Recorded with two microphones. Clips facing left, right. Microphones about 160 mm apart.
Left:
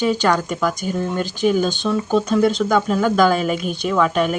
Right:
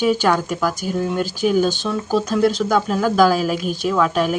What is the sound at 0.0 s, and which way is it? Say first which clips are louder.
Speech: right 1 dB; 5° right (ahead or behind).